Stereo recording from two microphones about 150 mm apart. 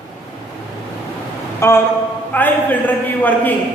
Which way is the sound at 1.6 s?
20° left (ahead or behind).